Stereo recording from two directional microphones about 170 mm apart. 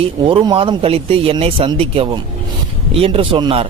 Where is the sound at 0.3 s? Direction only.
30° right (ahead or behind).